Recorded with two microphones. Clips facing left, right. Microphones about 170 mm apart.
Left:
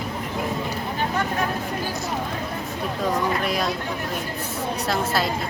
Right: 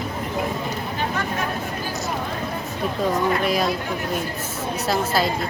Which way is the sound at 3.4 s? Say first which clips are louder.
Right 3 dB; centre (ahead or behind).